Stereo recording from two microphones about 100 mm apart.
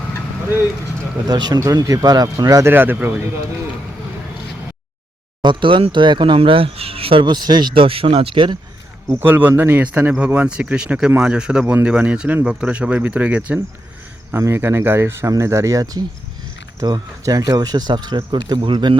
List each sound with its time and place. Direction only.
1.3 s a man's voice: 40° right (ahead or behind)
2.6 s speech: 20° right (ahead or behind)
5.4 s speech: 50° right (ahead or behind)
7.7 s speech: 65° right (ahead or behind)
9.0 s speech: 20° right (ahead or behind)
14.3 s a man's voice: 25° right (ahead or behind); by 18.9 s 50° right (ahead or behind)